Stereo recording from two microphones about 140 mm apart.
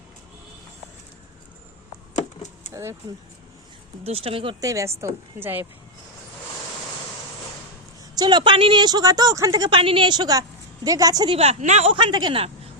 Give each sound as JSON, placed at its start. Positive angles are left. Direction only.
{"t": 2.1, "sound": "a sound", "side_deg": 55}
{"t": 4.0, "sound": "a woman's voice", "side_deg": -45}
{"t": 4.6, "sound": "a woman's voice", "side_deg": -20}
{"t": 8.1, "sound": "a woman's voice", "side_deg": -30}
{"t": 11.3, "sound": "a woman's voice", "side_deg": -55}
{"t": 11.9, "sound": "a woman's voice", "side_deg": -35}